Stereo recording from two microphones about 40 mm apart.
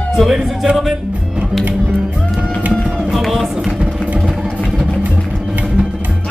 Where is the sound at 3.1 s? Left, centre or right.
Centre.